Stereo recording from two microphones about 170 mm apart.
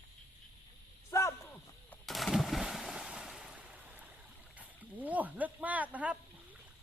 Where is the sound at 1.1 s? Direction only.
15° left (ahead or behind).